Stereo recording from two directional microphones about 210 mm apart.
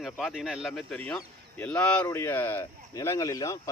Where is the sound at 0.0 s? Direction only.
Centre (ahead or behind).